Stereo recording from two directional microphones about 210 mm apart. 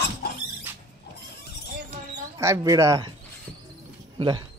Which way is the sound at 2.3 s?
15° right (ahead or behind).